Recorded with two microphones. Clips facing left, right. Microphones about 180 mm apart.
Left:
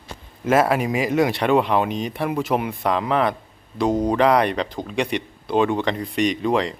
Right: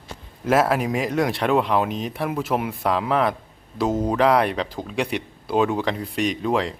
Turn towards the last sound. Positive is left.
turn(degrees=0)  # may be behind; listen again after turning